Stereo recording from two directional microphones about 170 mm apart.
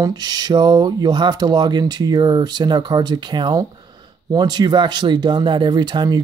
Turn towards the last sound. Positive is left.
turn(degrees=-25)  # may be behind; listen again after turning